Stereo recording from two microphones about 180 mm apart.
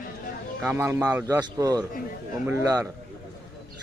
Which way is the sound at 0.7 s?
15° right (ahead or behind).